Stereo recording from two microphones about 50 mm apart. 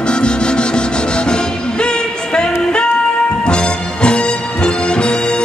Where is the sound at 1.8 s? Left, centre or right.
Centre.